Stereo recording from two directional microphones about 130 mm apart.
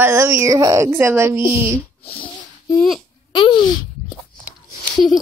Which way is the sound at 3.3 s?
40° left (ahead or behind).